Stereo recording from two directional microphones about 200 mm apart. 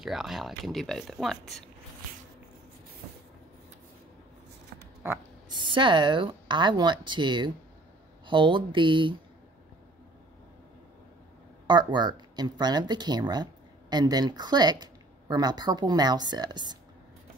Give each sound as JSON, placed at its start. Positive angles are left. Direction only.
{"t": 0.0, "sound": "speech", "side_deg": 0}
{"t": 5.5, "sound": "speech", "side_deg": -25}
{"t": 11.6, "sound": "speech", "side_deg": -20}